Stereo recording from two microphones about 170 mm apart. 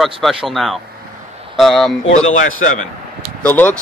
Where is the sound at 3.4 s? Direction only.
10° left (ahead or behind).